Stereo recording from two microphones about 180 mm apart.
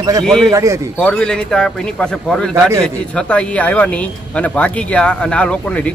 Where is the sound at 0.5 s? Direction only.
15° right (ahead or behind).